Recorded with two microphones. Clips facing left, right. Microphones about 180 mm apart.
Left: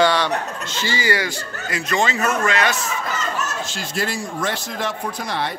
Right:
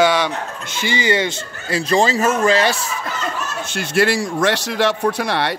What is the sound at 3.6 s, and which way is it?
Speech, 65° right (ahead or behind).